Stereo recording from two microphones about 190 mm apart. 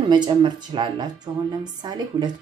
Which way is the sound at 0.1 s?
25° right (ahead or behind).